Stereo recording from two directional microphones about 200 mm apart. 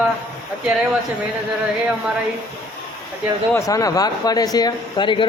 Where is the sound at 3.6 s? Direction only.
15° left (ahead or behind).